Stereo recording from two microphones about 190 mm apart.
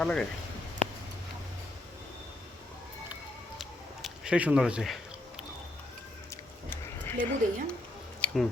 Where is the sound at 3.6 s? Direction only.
5° right (ahead or behind).